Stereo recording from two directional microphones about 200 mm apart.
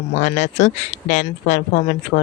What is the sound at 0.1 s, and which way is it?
Speech, 35° left (ahead or behind).